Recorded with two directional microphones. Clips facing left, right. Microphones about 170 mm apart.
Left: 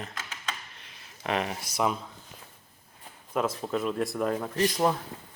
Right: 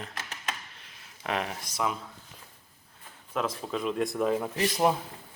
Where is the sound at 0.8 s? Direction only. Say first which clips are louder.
Left 2 dB; centre (ahead or behind).